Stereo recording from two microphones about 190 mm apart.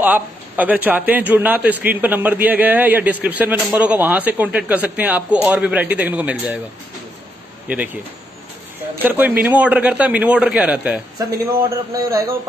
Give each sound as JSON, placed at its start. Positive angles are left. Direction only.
{"t": 0.0, "sound": "a man's voice", "side_deg": -10}
{"t": 7.6, "sound": "a man's voice", "side_deg": -10}
{"t": 9.0, "sound": "a man's voice", "side_deg": -10}
{"t": 11.7, "sound": "a man's voice", "side_deg": -20}